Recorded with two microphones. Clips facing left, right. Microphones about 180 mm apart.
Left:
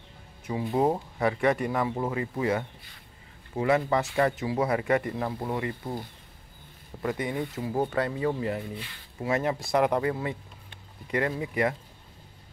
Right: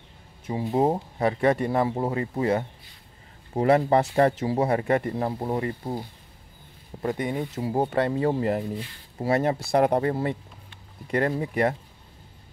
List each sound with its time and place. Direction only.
0.5 s speech: 25° right (ahead or behind)